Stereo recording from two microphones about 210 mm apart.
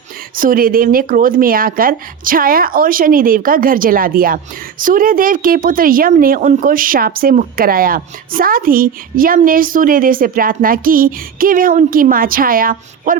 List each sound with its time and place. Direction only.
0.3 s speech: 40° right (ahead or behind)